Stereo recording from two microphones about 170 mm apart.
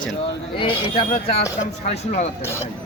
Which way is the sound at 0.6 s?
30° left (ahead or behind).